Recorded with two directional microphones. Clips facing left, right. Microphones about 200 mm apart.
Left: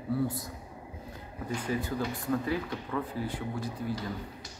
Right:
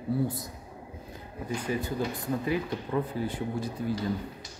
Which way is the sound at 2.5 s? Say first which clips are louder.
Right 3 dB; 20° right (ahead or behind).